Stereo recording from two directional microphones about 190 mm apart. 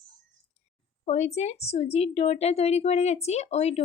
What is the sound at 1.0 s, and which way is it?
Speech, 35° left (ahead or behind).